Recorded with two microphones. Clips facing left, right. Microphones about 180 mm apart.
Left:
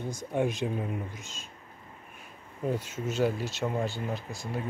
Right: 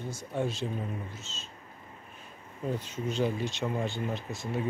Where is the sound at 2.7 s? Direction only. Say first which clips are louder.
Left 1 dB; 10° left (ahead or behind).